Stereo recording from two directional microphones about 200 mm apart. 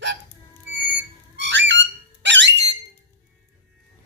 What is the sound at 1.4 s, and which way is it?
Music, 60° right (ahead or behind).